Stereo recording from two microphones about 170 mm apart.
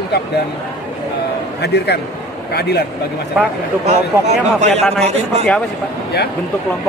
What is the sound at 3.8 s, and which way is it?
Speech, 40° right (ahead or behind).